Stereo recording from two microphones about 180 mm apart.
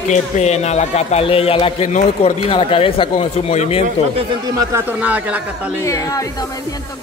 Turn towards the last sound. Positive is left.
turn(degrees=-10)  # may be behind; listen again after turning